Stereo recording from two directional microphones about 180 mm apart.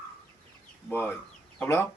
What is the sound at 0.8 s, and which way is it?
Speech, 10° left (ahead or behind).